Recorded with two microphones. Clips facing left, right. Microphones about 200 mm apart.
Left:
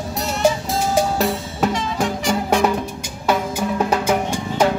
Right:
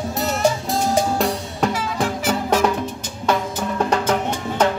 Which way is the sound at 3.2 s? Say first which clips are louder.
Left 1 dB; 10° left (ahead or behind).